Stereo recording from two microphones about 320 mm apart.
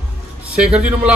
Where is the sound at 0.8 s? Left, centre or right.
Centre.